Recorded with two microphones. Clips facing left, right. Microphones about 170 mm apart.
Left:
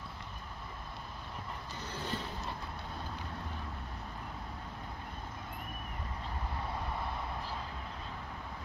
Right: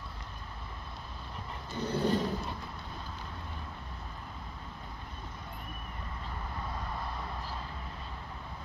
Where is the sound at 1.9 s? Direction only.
30° right (ahead or behind).